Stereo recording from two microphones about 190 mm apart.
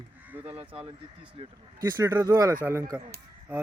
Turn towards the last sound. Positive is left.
turn(degrees=-10)  # may be behind; listen again after turning